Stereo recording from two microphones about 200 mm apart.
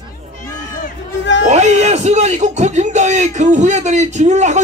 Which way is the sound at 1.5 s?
35° right (ahead or behind).